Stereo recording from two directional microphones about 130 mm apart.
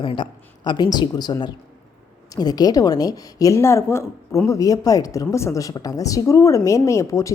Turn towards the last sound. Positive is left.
turn(degrees=25)  # may be behind; listen again after turning